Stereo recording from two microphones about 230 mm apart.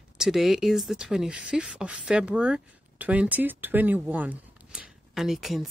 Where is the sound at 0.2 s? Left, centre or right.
Centre.